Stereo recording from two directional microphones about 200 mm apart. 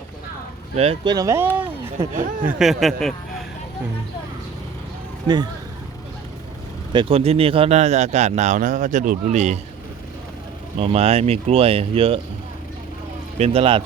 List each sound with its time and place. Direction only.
0.8 s speech: 30° right (ahead or behind)
1.1 s speech: 15° right (ahead or behind)
2.4 s speech: 5° right (ahead or behind)
6.9 s speech: 25° right (ahead or behind)
10.8 s speech: 30° right (ahead or behind)
13.4 s speech: 30° right (ahead or behind)